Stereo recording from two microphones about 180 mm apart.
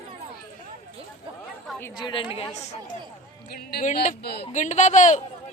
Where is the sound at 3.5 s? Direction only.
55° left (ahead or behind).